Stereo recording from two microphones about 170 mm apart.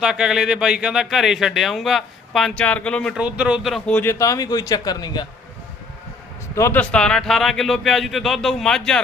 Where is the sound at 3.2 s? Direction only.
5° right (ahead or behind).